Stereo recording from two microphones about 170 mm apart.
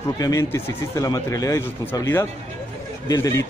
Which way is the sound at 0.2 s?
15° left (ahead or behind).